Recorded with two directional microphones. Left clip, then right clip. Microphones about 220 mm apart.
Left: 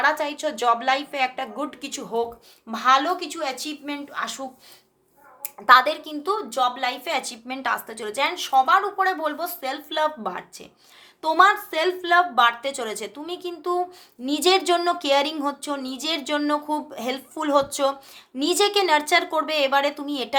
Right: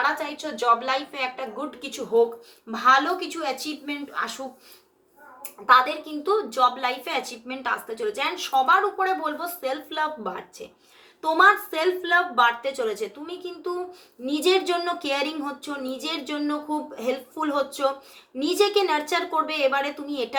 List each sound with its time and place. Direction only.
0.0 s a woman's voice: 50° left (ahead or behind)
2.6 s a woman's voice: 30° left (ahead or behind)
5.6 s a woman's voice: 40° left (ahead or behind)